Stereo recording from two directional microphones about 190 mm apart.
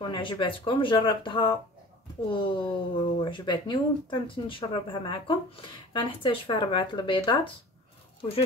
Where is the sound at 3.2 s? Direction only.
25° left (ahead or behind).